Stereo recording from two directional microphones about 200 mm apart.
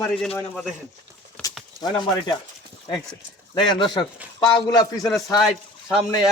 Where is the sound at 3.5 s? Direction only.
25° left (ahead or behind).